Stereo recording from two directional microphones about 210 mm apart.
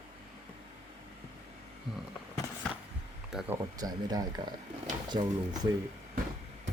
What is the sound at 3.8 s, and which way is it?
Speech, 20° right (ahead or behind).